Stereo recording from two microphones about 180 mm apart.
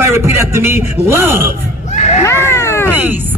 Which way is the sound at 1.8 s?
40° left (ahead or behind).